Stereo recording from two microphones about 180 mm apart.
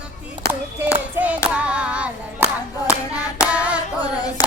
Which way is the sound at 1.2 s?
5° right (ahead or behind).